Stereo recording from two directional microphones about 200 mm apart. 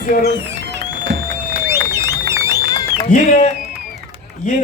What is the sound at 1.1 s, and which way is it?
Music, 55° right (ahead or behind).